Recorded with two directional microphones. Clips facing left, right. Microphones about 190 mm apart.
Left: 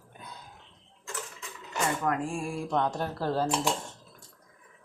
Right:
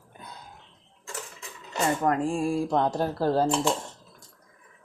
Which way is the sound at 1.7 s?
35° right (ahead or behind).